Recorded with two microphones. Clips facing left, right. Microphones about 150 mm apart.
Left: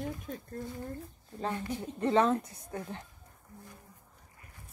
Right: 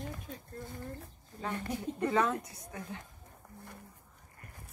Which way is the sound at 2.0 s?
30° left (ahead or behind).